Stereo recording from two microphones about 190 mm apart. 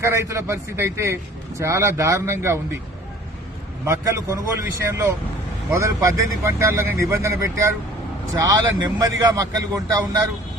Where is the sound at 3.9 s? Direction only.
15° right (ahead or behind).